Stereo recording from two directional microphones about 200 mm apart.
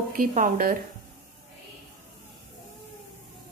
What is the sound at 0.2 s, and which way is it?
Speech, 45° right (ahead or behind).